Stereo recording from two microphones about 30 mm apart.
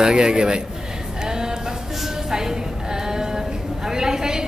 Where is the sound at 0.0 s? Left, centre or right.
Right.